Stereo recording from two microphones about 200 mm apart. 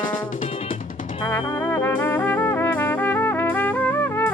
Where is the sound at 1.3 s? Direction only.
10° left (ahead or behind).